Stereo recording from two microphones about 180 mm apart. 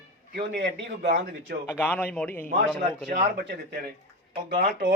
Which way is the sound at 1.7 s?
10° left (ahead or behind).